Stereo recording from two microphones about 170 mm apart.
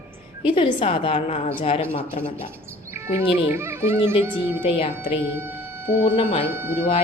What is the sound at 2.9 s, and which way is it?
Speech, 15° right (ahead or behind).